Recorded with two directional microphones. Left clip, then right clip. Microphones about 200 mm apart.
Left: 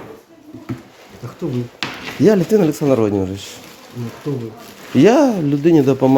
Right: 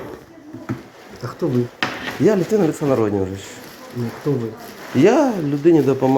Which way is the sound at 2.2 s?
65° left (ahead or behind).